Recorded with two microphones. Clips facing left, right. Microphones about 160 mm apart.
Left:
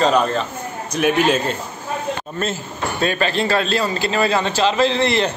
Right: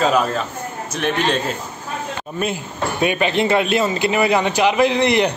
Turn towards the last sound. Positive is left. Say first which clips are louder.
# right 2 dB
turn(degrees=-15)  # may be behind; listen again after turning